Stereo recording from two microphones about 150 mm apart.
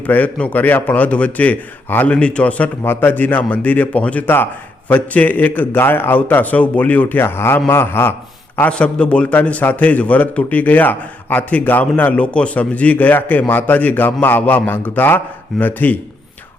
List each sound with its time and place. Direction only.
0.1 s a man's voice: 10° left (ahead or behind)